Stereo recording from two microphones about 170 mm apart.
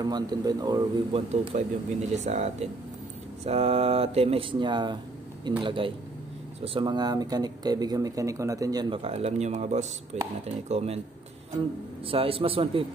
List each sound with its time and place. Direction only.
0.0 s speech: 25° right (ahead or behind)
1.5 s speech: 45° right (ahead or behind); by 9.0 s 20° right (ahead or behind)
9.0 s speech: 35° right (ahead or behind)
12.1 s speech: 35° right (ahead or behind)